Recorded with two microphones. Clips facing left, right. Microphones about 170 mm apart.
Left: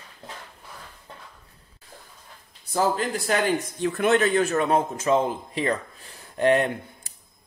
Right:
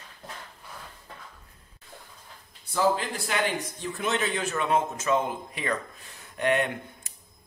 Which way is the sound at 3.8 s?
60° left (ahead or behind).